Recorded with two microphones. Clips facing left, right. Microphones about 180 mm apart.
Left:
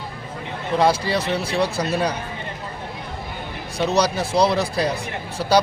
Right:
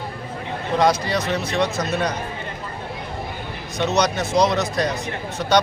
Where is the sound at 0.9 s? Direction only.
30° left (ahead or behind).